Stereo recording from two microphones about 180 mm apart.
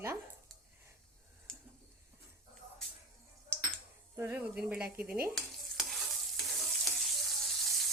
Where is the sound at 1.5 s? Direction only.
Centre (ahead or behind).